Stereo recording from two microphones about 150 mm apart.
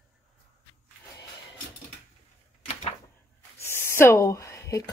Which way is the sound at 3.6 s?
15° left (ahead or behind).